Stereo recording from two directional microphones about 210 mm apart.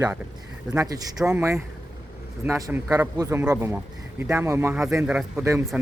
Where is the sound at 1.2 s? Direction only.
5° right (ahead or behind).